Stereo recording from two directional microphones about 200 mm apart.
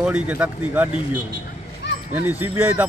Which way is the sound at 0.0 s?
5° right (ahead or behind).